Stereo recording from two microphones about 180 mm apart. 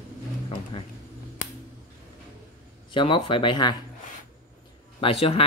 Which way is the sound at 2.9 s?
25° left (ahead or behind).